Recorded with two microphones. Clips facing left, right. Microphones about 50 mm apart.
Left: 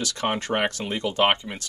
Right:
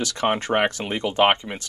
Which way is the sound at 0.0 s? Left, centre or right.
Centre.